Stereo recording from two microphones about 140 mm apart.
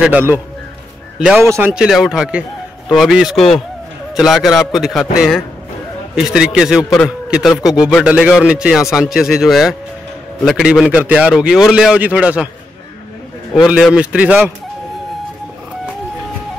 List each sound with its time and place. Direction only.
0.0 s a man's voice: 10° right (ahead or behind)
1.4 s a man's voice: 20° right (ahead or behind)
1.7 s a man's voice: 5° right (ahead or behind)
13.7 s a man's voice: 5° right (ahead or behind)